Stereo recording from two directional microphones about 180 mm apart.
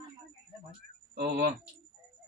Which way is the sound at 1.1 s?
60° right (ahead or behind).